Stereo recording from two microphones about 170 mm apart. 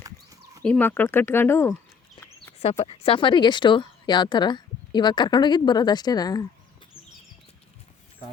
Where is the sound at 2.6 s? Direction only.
35° left (ahead or behind).